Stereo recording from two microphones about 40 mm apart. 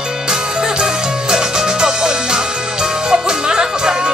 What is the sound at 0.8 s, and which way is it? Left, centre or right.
Music, centre.